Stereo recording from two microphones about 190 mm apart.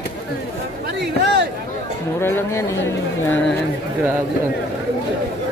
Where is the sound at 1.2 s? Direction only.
60° right (ahead or behind).